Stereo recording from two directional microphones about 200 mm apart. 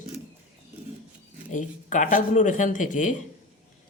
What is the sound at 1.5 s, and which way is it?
Speech, 40° left (ahead or behind).